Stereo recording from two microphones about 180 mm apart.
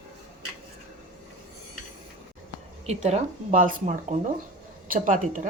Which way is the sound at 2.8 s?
40° right (ahead or behind).